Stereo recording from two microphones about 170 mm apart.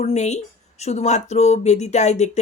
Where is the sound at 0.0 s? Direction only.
40° left (ahead or behind).